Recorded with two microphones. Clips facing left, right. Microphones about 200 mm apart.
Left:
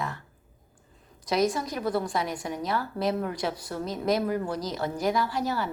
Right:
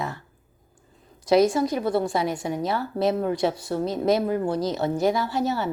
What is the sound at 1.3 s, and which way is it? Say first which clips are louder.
A woman's voice: right 7 dB; 30° right (ahead or behind).